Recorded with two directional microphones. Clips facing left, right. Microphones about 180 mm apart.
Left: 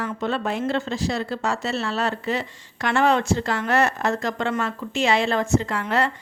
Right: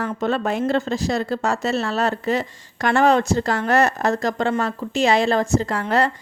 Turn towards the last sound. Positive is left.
turn(degrees=-40)  # may be behind; listen again after turning